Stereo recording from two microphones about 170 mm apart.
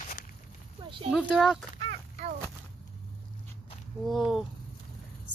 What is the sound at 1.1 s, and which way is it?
Speech, 5° right (ahead or behind).